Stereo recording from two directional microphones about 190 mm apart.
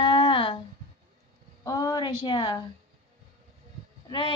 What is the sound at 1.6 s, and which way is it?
A woman's voice, 20° left (ahead or behind).